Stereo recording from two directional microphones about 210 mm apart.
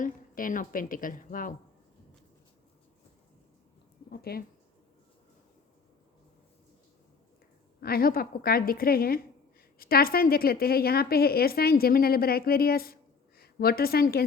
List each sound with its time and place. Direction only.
0.0 s a woman's voice: 40° left (ahead or behind)
4.1 s a woman's voice: 45° left (ahead or behind)
7.8 s a woman's voice: 45° left (ahead or behind)